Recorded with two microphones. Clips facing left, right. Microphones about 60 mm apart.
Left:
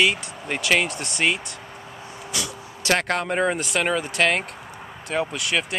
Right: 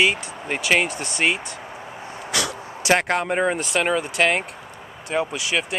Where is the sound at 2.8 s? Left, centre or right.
Centre.